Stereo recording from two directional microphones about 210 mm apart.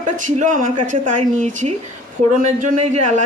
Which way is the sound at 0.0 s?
40° right (ahead or behind).